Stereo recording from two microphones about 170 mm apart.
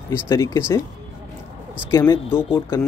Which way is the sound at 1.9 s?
15° left (ahead or behind).